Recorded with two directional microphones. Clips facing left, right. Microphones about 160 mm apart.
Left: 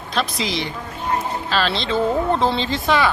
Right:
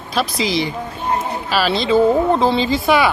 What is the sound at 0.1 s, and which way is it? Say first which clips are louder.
A woman's voice: right 4 dB; 5° right (ahead or behind).